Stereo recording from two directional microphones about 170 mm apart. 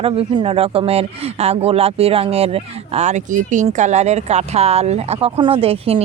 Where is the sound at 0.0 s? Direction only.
35° right (ahead or behind).